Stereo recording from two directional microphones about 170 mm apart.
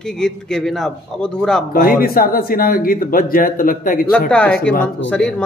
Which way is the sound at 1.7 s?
60° left (ahead or behind).